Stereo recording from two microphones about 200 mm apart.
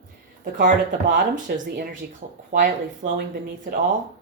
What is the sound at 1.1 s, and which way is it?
Speech, 40° right (ahead or behind).